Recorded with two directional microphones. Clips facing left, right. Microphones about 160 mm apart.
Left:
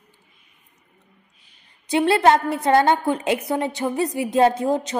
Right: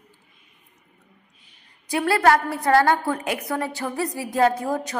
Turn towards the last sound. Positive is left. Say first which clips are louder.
# left 3 dB
turn(degrees=25)  # may be behind; listen again after turning